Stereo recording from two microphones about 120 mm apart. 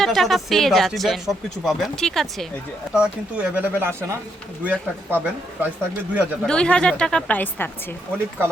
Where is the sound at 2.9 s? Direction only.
10° right (ahead or behind).